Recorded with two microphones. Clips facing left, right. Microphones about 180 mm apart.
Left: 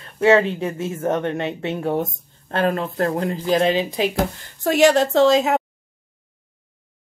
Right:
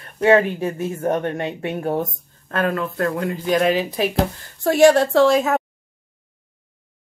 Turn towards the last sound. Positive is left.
turn(degrees=20)  # may be behind; listen again after turning